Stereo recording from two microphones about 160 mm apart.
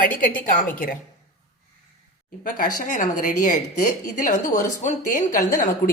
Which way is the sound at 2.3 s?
55° left (ahead or behind).